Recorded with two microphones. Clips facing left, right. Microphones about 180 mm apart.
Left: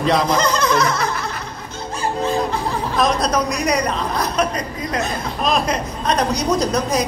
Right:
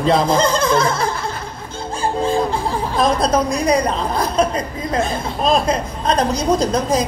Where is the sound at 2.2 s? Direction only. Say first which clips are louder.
Right 2 dB; 30° right (ahead or behind).